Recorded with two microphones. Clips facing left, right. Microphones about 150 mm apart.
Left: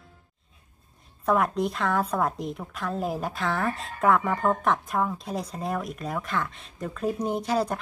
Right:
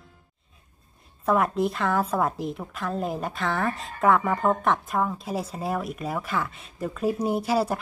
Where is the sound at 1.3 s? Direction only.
Centre (ahead or behind).